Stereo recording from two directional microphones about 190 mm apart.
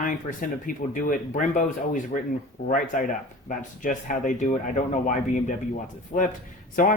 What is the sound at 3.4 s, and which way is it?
Speech, 45° left (ahead or behind).